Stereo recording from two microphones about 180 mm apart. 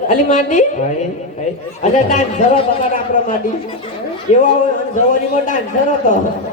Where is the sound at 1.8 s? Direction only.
40° left (ahead or behind).